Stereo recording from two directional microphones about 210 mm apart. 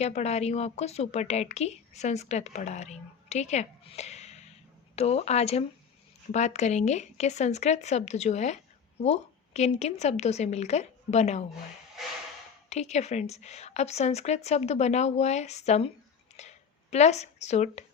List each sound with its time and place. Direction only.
0.0 s a woman's voice: 30° left (ahead or behind)
12.6 s a woman's voice: 30° left (ahead or behind)